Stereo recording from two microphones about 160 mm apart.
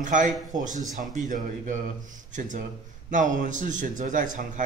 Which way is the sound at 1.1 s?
55° right (ahead or behind).